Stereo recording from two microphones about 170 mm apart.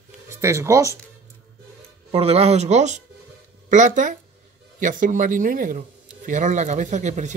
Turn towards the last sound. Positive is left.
turn(degrees=-45)  # may be behind; listen again after turning